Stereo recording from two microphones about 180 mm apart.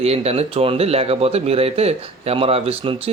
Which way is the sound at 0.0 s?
35° right (ahead or behind).